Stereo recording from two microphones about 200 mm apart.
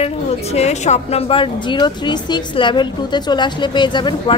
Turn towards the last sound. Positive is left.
turn(degrees=20)  # may be behind; listen again after turning